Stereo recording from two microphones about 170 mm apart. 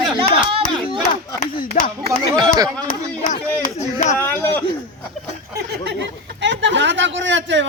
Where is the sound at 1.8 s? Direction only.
50° left (ahead or behind).